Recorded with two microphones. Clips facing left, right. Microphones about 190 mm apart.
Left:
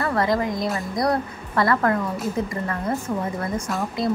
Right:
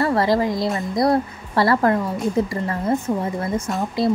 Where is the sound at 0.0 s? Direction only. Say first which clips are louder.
Right 4 dB; 30° right (ahead or behind).